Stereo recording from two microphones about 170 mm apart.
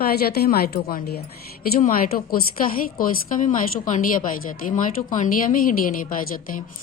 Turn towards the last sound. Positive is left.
turn(degrees=55)  # may be behind; listen again after turning